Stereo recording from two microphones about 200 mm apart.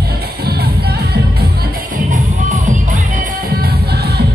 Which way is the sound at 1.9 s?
40° right (ahead or behind).